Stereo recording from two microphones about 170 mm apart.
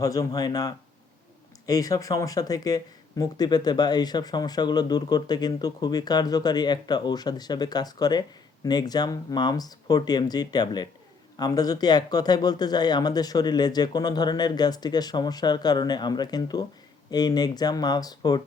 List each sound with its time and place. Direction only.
0.0 s speech: 20° left (ahead or behind)